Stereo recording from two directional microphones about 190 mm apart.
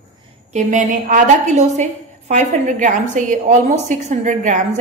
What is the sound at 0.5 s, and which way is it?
A woman's voice, 40° right (ahead or behind).